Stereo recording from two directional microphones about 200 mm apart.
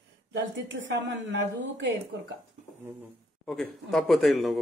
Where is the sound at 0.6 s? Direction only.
65° right (ahead or behind).